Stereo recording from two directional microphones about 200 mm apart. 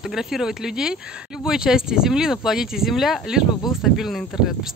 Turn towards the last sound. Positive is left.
turn(degrees=0)  # may be behind; listen again after turning